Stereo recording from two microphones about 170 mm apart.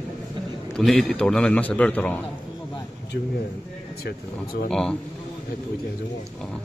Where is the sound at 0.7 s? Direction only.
Centre (ahead or behind).